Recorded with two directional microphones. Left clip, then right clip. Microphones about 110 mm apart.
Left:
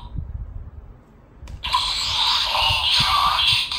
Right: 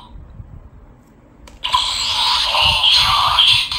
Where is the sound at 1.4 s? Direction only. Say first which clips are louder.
Right 4 dB; 20° right (ahead or behind).